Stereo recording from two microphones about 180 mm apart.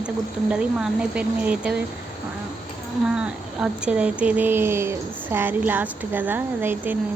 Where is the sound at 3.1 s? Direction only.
5° right (ahead or behind).